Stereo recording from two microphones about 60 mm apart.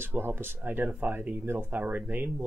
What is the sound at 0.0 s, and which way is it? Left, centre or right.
Speech, right.